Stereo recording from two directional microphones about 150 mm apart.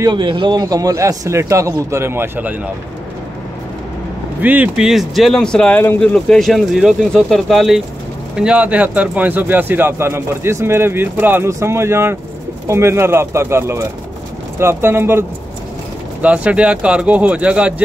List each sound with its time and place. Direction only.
0.0 s a man's voice: 30° right (ahead or behind); by 2.7 s 10° right (ahead or behind)
4.4 s speech: 10° right (ahead or behind)